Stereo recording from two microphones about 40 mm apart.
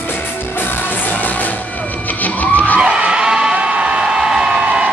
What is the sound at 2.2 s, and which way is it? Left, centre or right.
Music, left.